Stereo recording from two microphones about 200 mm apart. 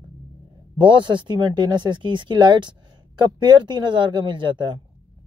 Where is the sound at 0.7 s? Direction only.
25° right (ahead or behind).